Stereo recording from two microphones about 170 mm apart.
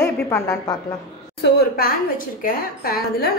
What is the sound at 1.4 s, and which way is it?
A woman's voice, 60° left (ahead or behind).